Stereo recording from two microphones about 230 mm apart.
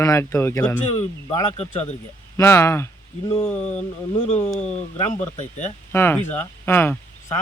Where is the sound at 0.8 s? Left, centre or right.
Left.